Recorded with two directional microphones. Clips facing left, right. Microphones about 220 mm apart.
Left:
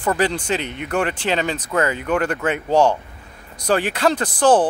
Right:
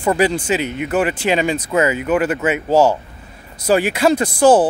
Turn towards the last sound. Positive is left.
turn(degrees=-10)  # may be behind; listen again after turning